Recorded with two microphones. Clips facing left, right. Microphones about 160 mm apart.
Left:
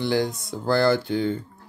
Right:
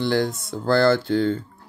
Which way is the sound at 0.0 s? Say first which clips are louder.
Right 2 dB; 15° left (ahead or behind).